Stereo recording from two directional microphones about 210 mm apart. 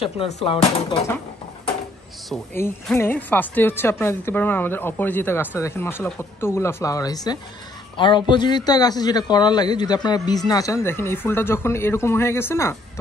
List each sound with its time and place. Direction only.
0.0 s speech: 30° left (ahead or behind)
2.5 s a man's voice: 10° left (ahead or behind)